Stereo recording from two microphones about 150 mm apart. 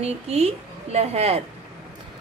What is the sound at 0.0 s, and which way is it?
Speech, 45° right (ahead or behind).